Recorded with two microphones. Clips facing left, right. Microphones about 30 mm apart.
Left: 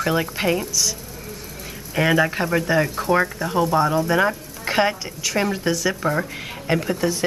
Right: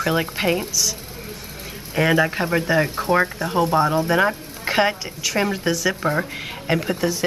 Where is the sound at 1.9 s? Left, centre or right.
Centre.